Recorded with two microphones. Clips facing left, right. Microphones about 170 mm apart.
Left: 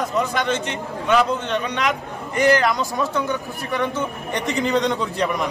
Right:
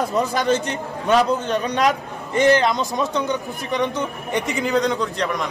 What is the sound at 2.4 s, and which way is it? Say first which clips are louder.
Speech: right 1 dB; 25° right (ahead or behind).